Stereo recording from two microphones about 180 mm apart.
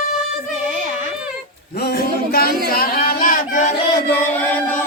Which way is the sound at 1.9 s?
55° left (ahead or behind).